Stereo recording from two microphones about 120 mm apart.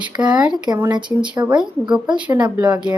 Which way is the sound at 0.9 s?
40° right (ahead or behind).